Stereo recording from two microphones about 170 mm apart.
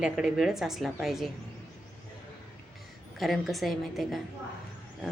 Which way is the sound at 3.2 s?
Centre (ahead or behind).